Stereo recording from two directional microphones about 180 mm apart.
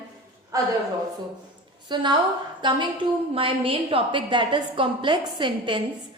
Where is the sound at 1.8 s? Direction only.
25° right (ahead or behind).